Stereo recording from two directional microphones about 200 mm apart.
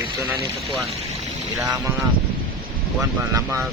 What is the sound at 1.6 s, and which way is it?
Speech, 15° right (ahead or behind).